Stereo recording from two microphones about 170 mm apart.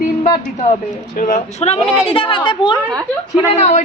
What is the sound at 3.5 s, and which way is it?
Speech, 40° left (ahead or behind).